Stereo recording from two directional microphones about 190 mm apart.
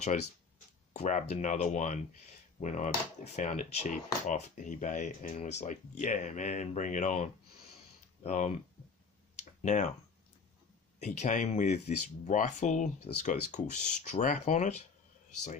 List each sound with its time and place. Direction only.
0.9 s speech: 40° left (ahead or behind)
9.4 s a sound: 40° left (ahead or behind)
11.0 s speech: 40° left (ahead or behind)